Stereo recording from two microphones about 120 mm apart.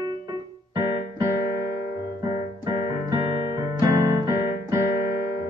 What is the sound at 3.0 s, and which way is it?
Keyboard, 30° right (ahead or behind).